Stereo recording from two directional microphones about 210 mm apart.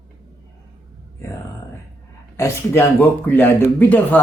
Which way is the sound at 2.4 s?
10° left (ahead or behind).